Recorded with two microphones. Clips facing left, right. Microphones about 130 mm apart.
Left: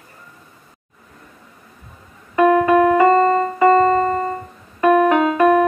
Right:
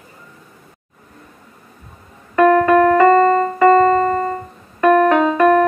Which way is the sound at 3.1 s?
50° right (ahead or behind).